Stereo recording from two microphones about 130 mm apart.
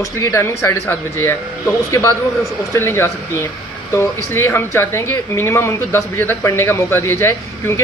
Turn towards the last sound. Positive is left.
turn(degrees=20)  # may be behind; listen again after turning